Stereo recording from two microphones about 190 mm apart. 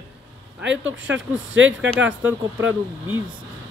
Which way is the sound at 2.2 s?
10° right (ahead or behind).